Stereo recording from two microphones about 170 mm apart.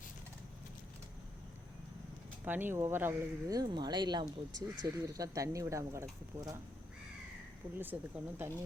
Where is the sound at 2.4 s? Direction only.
10° right (ahead or behind).